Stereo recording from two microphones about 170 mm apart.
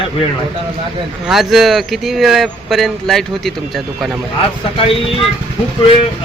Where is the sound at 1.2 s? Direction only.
Centre (ahead or behind).